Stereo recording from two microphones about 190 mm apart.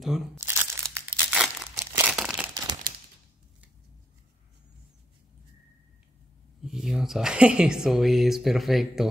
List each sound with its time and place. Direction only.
0.0 s speech: centre (ahead or behind)
0.4 s crumpling: 15° right (ahead or behind)
2.5 s crumpling: 20° right (ahead or behind)
6.6 s speech: centre (ahead or behind)